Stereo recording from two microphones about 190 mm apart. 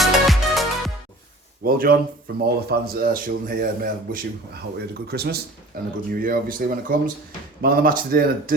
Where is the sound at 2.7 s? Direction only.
50° right (ahead or behind).